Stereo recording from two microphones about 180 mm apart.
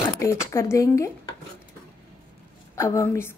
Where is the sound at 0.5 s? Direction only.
15° left (ahead or behind).